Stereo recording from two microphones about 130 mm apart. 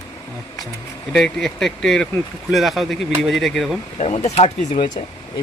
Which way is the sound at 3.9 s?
60° left (ahead or behind).